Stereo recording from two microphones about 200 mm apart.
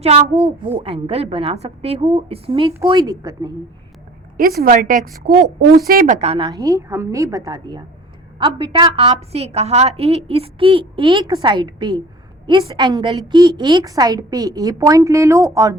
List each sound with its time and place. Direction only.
0.0 s a woman's voice: 30° right (ahead or behind)
4.4 s a woman's voice: 45° right (ahead or behind); by 6.5 s 30° right (ahead or behind)
6.5 s a woman's voice: 15° right (ahead or behind)